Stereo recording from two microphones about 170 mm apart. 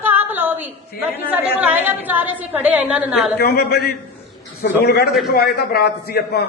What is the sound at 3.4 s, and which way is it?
Speech, 65° left (ahead or behind).